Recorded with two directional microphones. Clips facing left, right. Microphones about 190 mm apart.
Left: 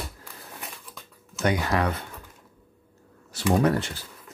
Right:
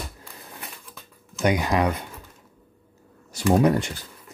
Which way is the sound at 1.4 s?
15° right (ahead or behind).